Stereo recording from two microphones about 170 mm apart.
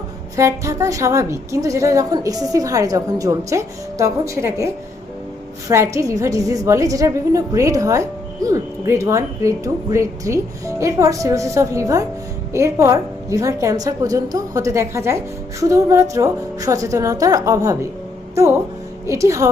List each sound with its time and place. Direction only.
0.3 s a woman's voice: 20° right (ahead or behind)
19.0 s a woman's voice: 20° right (ahead or behind)